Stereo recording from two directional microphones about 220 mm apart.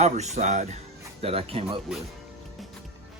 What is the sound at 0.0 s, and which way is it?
Speech, 30° right (ahead or behind).